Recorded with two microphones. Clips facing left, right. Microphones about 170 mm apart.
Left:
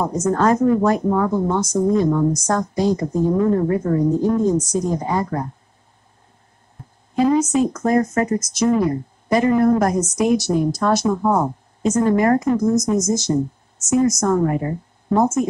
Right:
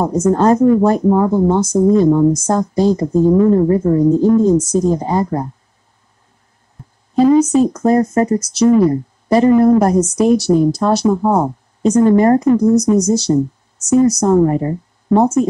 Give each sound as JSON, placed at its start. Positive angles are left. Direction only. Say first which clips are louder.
{"t": 0.0, "sound": "speech", "louder": "right 5 dB", "side_deg": -30}
{"t": 7.2, "sound": "speech", "louder": "right 6 dB", "side_deg": -30}